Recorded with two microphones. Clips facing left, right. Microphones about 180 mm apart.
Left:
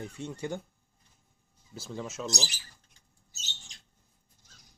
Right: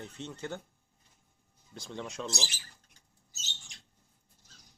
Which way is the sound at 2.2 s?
40° left (ahead or behind).